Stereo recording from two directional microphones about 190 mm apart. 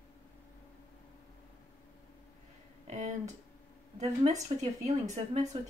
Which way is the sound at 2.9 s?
40° right (ahead or behind).